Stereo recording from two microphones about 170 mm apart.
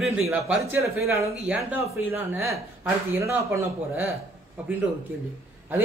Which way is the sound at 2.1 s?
15° right (ahead or behind).